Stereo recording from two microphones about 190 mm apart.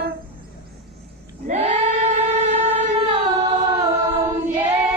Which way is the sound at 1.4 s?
40° right (ahead or behind).